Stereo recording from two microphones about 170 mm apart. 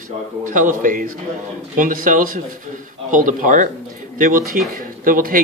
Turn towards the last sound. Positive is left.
turn(degrees=-55)  # may be behind; listen again after turning